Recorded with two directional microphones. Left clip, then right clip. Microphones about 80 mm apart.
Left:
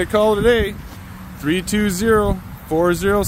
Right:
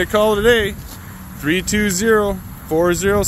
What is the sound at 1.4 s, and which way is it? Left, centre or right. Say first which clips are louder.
Speech: right 2 dB; left.